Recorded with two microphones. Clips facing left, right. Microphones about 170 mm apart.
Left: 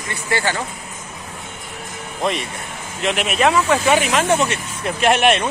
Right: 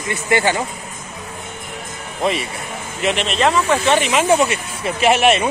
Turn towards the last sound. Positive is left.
turn(degrees=0)  # may be behind; listen again after turning